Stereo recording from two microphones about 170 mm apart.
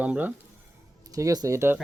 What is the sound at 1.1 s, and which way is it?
Speech, 20° right (ahead or behind).